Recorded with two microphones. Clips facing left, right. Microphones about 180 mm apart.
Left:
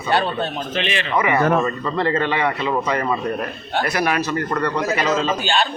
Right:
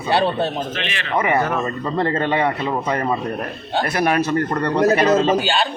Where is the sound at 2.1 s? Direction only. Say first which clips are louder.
Right 1 dB; 40° right (ahead or behind).